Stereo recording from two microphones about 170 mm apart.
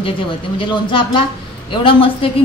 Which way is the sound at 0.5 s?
30° left (ahead or behind).